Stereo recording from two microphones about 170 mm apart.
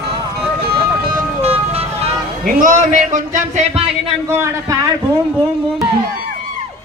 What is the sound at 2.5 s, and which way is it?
A man's voice, 50° right (ahead or behind).